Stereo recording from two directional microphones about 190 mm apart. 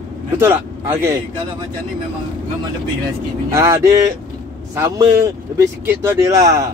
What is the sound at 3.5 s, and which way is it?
A man's voice, 15° right (ahead or behind).